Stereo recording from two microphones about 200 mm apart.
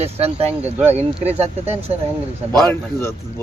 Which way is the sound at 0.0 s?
30° right (ahead or behind).